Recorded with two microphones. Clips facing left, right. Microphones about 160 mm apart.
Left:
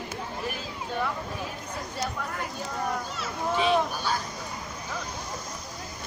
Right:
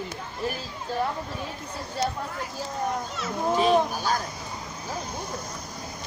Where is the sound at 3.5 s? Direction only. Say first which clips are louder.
Right 3 dB; 40° right (ahead or behind).